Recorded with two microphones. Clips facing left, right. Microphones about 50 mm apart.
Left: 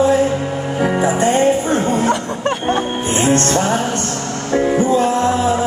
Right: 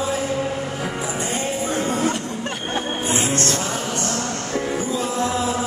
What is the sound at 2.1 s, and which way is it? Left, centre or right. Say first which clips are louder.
Music: left 8 dB; left.